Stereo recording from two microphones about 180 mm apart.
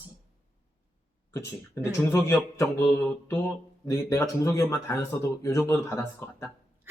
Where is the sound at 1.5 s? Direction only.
15° left (ahead or behind).